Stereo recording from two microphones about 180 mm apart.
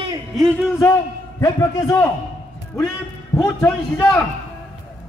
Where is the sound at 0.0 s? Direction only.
20° right (ahead or behind).